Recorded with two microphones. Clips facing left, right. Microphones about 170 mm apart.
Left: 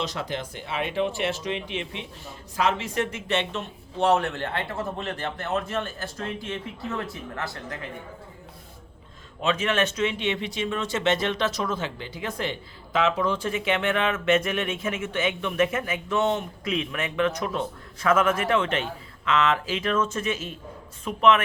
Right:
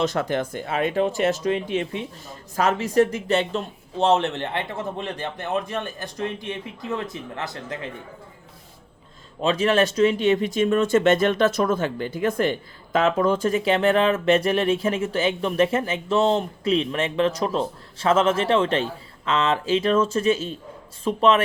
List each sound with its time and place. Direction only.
0.0 s speech: 50° right (ahead or behind); by 7.8 s 20° right (ahead or behind)
9.4 s speech: 35° right (ahead or behind)